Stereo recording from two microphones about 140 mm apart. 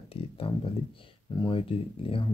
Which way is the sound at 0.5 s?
35° left (ahead or behind).